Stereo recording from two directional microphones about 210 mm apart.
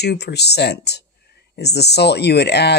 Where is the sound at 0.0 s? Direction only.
50° left (ahead or behind).